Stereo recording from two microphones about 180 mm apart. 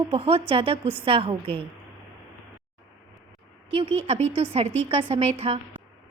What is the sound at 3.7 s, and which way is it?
A woman's voice, 30° right (ahead or behind).